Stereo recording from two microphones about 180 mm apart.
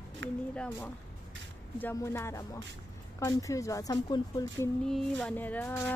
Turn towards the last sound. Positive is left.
turn(degrees=10)  # may be behind; listen again after turning